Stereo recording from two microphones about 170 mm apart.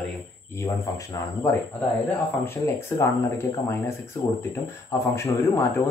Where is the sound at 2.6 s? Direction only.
15° left (ahead or behind).